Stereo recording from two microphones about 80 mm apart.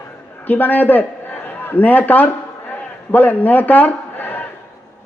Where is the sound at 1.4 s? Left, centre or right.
Left.